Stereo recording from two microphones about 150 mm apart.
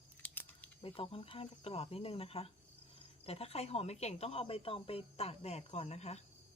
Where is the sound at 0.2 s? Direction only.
10° left (ahead or behind).